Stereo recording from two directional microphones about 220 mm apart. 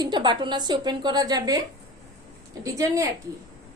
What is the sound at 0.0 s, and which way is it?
A woman's voice, 20° right (ahead or behind).